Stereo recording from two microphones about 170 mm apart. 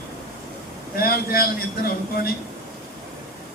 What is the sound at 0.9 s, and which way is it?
A man's voice, 60° left (ahead or behind).